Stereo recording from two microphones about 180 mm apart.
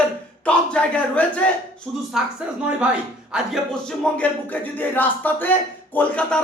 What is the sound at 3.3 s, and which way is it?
Speech, 5° right (ahead or behind).